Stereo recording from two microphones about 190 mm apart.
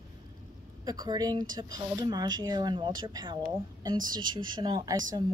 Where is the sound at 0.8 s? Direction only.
20° right (ahead or behind).